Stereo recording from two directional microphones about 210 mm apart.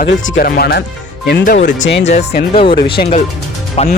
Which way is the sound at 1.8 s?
60° left (ahead or behind).